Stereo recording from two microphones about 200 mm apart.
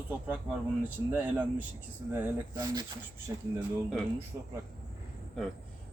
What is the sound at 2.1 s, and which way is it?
Speech, 15° right (ahead or behind).